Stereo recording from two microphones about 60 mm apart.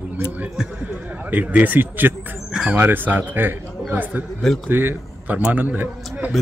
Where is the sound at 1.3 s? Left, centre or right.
Right.